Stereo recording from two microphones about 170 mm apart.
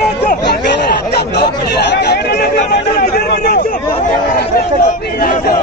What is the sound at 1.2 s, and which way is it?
Chatter, 75° left (ahead or behind).